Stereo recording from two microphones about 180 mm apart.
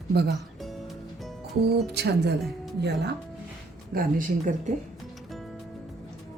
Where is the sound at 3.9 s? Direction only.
45° right (ahead or behind).